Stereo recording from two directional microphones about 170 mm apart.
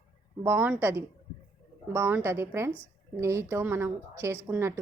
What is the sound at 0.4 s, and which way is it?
A woman's voice, 15° right (ahead or behind).